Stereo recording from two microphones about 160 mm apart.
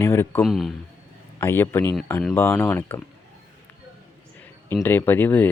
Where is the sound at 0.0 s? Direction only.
20° left (ahead or behind).